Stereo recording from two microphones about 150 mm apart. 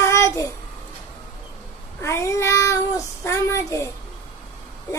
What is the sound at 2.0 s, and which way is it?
Cat, 20° left (ahead or behind).